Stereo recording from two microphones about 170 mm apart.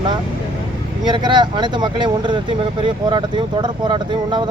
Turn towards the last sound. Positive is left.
turn(degrees=-25)  # may be behind; listen again after turning